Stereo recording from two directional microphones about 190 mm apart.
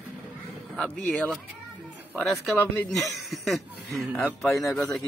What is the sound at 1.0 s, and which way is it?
Speech, centre (ahead or behind).